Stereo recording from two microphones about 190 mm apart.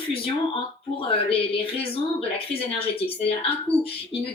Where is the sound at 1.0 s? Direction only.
30° left (ahead or behind).